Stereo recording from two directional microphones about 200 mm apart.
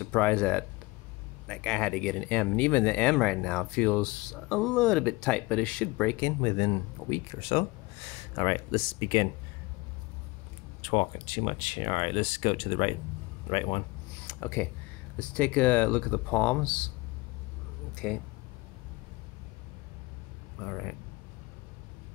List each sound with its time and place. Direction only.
0.1 s speech: 5° left (ahead or behind)
6.4 s speech: 25° left (ahead or behind)
10.8 s speech: 30° left (ahead or behind)
13.5 s a sound: 25° left (ahead or behind)
15.1 s speech: 5° left (ahead or behind)
17.9 s speech: 5° left (ahead or behind)
20.6 s speech: 5° left (ahead or behind)